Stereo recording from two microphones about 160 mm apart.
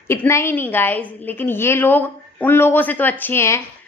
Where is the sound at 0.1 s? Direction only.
15° left (ahead or behind).